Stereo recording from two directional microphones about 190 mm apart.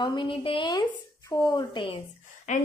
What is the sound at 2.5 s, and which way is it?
Speech, 40° left (ahead or behind).